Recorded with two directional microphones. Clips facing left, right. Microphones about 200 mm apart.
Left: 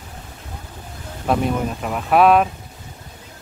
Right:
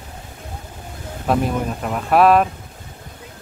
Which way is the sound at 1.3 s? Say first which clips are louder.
Even; centre (ahead or behind).